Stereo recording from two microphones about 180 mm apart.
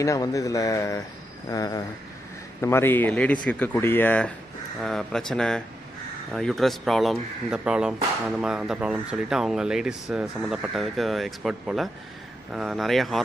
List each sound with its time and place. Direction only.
0.0 s speech: 20° left (ahead or behind); by 13.2 s centre (ahead or behind)